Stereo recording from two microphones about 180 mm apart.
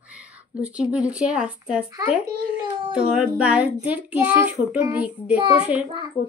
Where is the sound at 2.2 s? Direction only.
25° right (ahead or behind).